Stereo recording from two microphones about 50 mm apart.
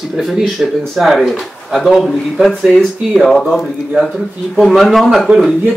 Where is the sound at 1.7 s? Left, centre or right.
Centre.